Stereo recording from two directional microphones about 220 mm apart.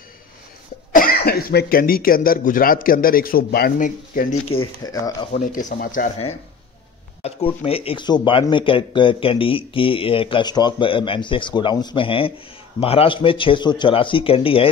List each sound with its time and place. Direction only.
0.9 s speech: 40° left (ahead or behind)
4.6 s speech: 15° left (ahead or behind)
5.3 s speech: 35° left (ahead or behind)
7.2 s speech: 25° left (ahead or behind)